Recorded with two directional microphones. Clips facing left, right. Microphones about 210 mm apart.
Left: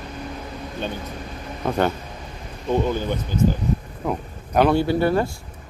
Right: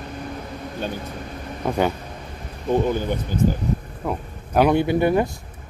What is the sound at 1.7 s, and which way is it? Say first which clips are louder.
Speech: even; 10° right (ahead or behind).